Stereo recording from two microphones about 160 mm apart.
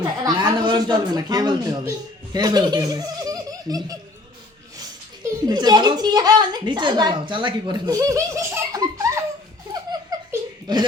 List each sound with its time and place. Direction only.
0.0 s a man's voice: 25° right (ahead or behind)
5.5 s speech: 25° right (ahead or behind)
10.1 s laughter: 25° right (ahead or behind)